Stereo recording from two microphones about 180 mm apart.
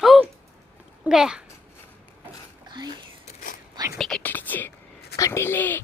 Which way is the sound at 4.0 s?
5° left (ahead or behind).